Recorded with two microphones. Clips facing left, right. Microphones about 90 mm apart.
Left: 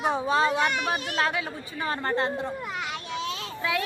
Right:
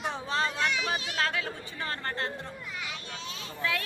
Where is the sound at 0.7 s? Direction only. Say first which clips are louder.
Left 4 dB; 55° left (ahead or behind).